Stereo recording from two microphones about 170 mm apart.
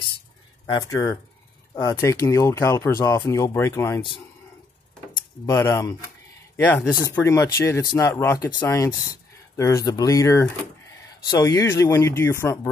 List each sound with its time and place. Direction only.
0.7 s speech: 20° left (ahead or behind)
5.5 s speech: 15° left (ahead or behind)